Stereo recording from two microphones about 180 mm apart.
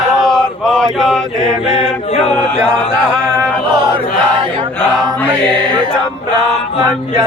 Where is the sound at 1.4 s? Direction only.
30° left (ahead or behind).